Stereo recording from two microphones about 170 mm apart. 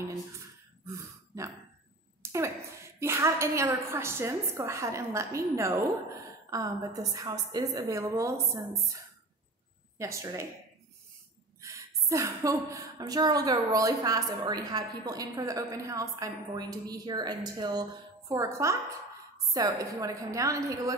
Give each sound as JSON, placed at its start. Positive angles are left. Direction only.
{"t": 0.8, "sound": "a sound", "side_deg": -20}
{"t": 3.0, "sound": "a woman's voice", "side_deg": -15}
{"t": 11.6, "sound": "a woman's voice", "side_deg": -20}